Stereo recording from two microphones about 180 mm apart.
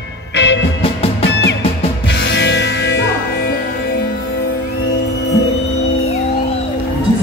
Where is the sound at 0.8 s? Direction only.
35° left (ahead or behind).